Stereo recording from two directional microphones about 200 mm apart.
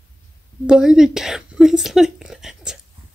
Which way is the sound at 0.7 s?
5° right (ahead or behind).